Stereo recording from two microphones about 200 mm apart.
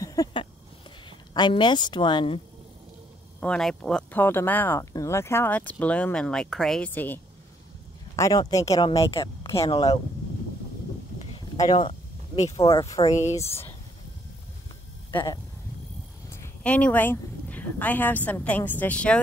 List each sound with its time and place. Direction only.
0.0 s a sound: 20° left (ahead or behind)
1.3 s speech: 20° left (ahead or behind)
3.3 s speech: 5° left (ahead or behind)
8.2 s speech: 20° left (ahead or behind)
11.5 s a sound: 20° left (ahead or behind)
12.5 s speech: 25° left (ahead or behind)
13.5 s speech: 15° left (ahead or behind)
15.0 s speech: 20° left (ahead or behind)